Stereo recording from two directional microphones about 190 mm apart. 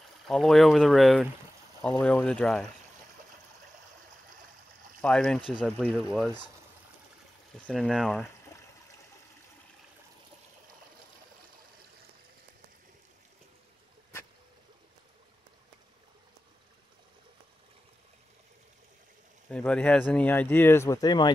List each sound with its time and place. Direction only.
0.3 s speech: centre (ahead or behind)
5.0 s speech: 5° left (ahead or behind)
5.9 s speech: 5° right (ahead or behind)
7.6 s speech: centre (ahead or behind)
19.5 s speech: 5° left (ahead or behind); by 21.3 s 20° left (ahead or behind)